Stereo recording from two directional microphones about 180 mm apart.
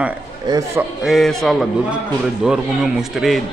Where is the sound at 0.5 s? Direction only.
20° right (ahead or behind).